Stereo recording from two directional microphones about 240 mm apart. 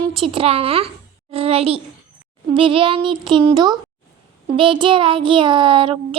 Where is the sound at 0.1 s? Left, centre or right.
Right.